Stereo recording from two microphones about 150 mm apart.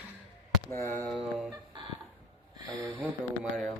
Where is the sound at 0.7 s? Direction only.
15° left (ahead or behind).